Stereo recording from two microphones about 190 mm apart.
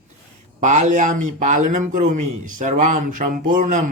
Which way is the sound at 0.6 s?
40° right (ahead or behind).